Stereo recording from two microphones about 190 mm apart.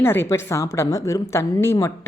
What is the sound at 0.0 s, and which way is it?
Speech, 10° left (ahead or behind).